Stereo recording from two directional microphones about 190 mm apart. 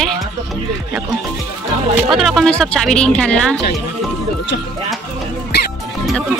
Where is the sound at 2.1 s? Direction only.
Centre (ahead or behind).